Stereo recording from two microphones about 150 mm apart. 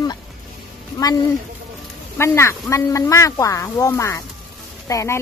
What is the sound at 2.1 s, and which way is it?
Speech, 15° left (ahead or behind).